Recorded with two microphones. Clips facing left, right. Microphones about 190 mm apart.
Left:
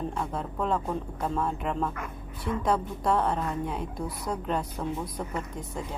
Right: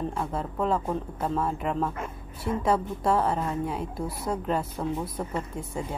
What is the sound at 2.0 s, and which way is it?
Speech, 25° right (ahead or behind).